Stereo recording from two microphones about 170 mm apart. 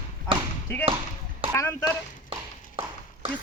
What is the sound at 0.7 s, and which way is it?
A man's voice, 15° left (ahead or behind).